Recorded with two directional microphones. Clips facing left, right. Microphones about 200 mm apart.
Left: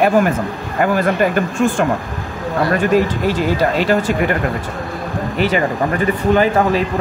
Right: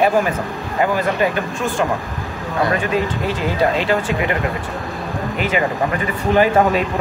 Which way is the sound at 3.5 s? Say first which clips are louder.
Even; 40° left (ahead or behind).